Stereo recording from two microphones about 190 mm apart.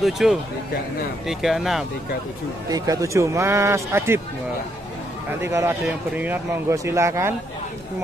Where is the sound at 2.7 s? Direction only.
15° right (ahead or behind).